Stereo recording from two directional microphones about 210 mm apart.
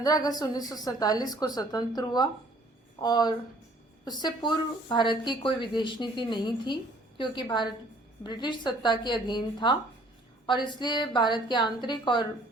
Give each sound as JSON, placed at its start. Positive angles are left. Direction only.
{"t": 0.0, "sound": "a woman's voice", "side_deg": 20}